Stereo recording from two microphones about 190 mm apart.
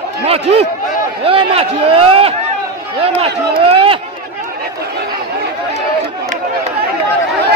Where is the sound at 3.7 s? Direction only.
30° right (ahead or behind).